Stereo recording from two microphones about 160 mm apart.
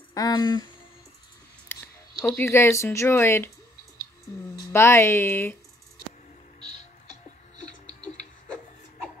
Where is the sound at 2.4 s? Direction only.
15° left (ahead or behind).